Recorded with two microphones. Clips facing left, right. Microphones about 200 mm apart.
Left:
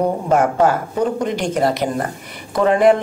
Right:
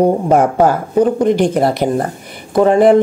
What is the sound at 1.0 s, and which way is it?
Speech, 55° right (ahead or behind).